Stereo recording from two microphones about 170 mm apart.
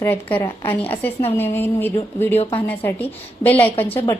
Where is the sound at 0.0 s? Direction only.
10° left (ahead or behind).